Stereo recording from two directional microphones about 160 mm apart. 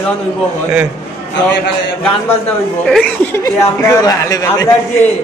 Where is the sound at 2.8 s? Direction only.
5° left (ahead or behind).